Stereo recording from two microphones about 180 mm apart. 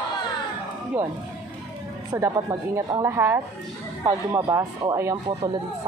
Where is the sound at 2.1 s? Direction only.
15° right (ahead or behind).